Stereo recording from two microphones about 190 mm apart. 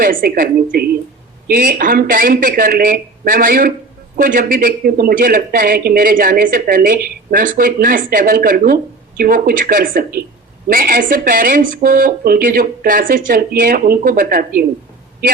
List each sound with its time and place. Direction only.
0.0 s speech: 50° right (ahead or behind)